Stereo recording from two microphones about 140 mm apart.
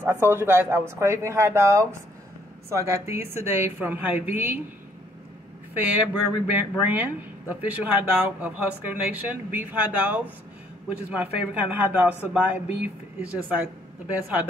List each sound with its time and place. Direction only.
0.0 s speech: 15° right (ahead or behind)
5.8 s speech: 10° right (ahead or behind)